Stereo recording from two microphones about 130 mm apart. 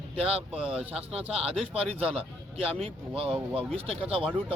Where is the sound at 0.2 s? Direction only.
50° right (ahead or behind).